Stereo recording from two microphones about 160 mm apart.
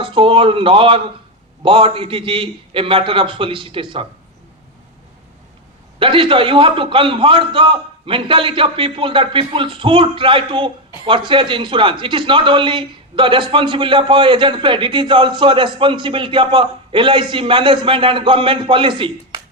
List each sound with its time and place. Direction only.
0.0 s a man's voice: 35° right (ahead or behind)
6.0 s a man's voice: 30° right (ahead or behind)